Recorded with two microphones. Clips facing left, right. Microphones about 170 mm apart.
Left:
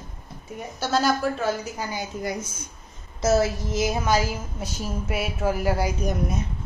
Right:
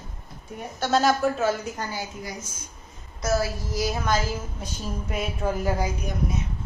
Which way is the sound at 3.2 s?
25° left (ahead or behind).